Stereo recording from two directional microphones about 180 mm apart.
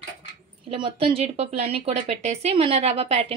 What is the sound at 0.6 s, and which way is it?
Speech, 30° right (ahead or behind).